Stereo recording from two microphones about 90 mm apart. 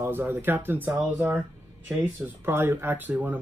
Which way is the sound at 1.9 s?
25° right (ahead or behind).